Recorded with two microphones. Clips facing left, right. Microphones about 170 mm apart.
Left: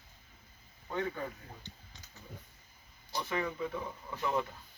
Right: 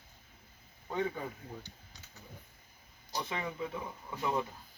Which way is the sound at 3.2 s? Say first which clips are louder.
Left 4 dB; 20° right (ahead or behind).